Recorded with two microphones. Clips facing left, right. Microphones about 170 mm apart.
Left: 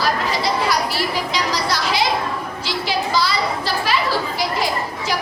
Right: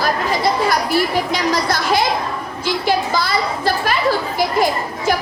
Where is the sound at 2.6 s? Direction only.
50° right (ahead or behind).